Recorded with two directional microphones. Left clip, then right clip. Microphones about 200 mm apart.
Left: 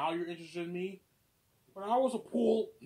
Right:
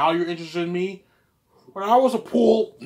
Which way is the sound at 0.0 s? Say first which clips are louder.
Right 14 dB; 20° right (ahead or behind).